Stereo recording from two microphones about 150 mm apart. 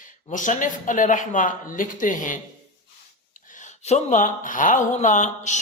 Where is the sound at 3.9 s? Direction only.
50° left (ahead or behind).